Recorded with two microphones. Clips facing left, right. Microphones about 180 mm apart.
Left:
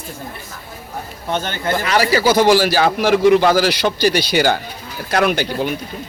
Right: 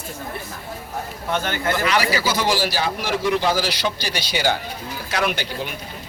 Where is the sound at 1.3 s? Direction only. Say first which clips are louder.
Left 1 dB; 25° left (ahead or behind).